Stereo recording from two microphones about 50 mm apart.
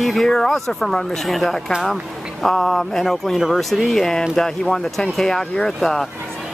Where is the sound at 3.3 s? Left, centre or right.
Centre.